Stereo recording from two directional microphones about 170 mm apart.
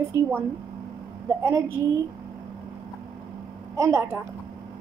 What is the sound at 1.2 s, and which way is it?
Speech, 15° right (ahead or behind).